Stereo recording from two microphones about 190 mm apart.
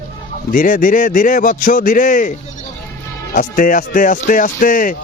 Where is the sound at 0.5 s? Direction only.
45° left (ahead or behind).